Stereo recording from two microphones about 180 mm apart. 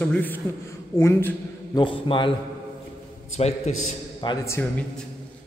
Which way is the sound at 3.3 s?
40° left (ahead or behind).